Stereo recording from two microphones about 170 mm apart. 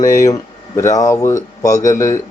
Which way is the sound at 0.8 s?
20° left (ahead or behind).